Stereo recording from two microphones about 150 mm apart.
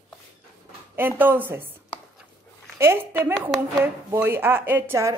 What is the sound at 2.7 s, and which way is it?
A woman's voice, 15° right (ahead or behind).